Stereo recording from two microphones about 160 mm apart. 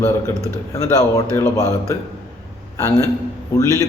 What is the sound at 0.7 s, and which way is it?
Speech, 20° left (ahead or behind).